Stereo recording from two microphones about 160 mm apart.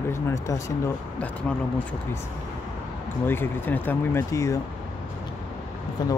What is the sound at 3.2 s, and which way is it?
Speech, 15° left (ahead or behind).